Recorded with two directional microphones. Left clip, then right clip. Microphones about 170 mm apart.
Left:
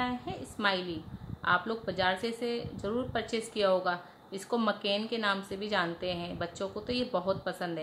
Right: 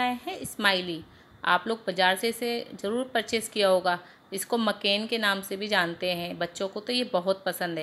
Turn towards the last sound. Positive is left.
turn(degrees=-30)  # may be behind; listen again after turning